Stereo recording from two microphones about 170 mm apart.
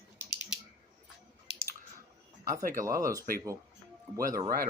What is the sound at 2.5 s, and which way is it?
Speech, 55° right (ahead or behind).